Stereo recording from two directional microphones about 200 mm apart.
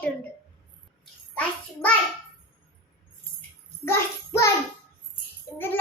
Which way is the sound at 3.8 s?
15° left (ahead or behind).